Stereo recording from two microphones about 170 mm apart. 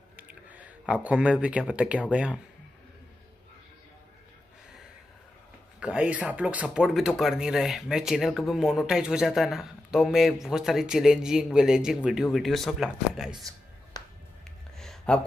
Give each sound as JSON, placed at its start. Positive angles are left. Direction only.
{"t": 0.1, "sound": "speech", "side_deg": -10}
{"t": 5.8, "sound": "speech", "side_deg": -5}
{"t": 13.3, "sound": "speech", "side_deg": -20}
{"t": 13.9, "sound": "music", "side_deg": 25}
{"t": 14.8, "sound": "a sound", "side_deg": 5}